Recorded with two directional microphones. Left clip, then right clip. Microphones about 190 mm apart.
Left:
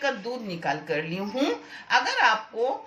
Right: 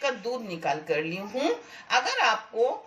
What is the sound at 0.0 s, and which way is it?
A woman's voice, 20° right (ahead or behind).